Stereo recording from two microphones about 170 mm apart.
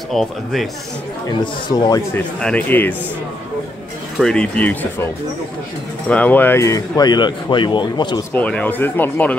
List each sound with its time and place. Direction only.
0.1 s speech: centre (ahead or behind)
1.4 s speech: 25° left (ahead or behind)
2.4 s speech: 10° left (ahead or behind)
4.2 s speech: 5° left (ahead or behind); by 8.2 s 25° left (ahead or behind)
8.3 s speech: 10° left (ahead or behind)